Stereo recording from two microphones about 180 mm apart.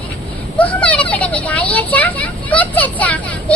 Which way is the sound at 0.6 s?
10° left (ahead or behind).